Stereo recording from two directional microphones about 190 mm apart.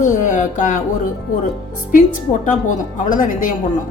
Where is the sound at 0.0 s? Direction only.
40° left (ahead or behind).